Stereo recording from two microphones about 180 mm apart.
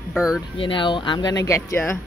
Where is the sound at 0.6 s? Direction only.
25° left (ahead or behind).